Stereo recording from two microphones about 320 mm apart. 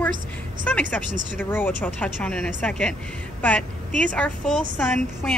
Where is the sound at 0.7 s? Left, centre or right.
Centre.